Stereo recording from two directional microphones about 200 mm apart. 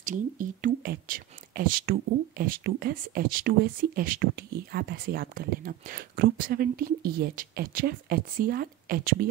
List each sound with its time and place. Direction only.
0.0 s speech: 40° right (ahead or behind)